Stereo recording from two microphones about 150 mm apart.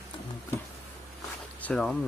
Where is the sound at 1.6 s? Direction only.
10° left (ahead or behind).